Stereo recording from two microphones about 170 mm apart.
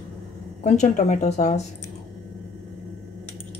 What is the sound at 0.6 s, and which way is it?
A woman's voice, 45° left (ahead or behind).